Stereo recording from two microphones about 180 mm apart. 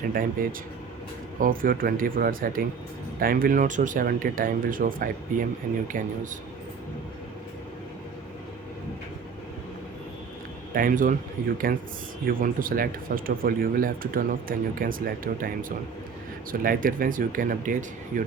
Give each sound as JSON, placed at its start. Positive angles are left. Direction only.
{"t": 0.1, "sound": "speech", "side_deg": -50}
{"t": 10.8, "sound": "speech", "side_deg": -50}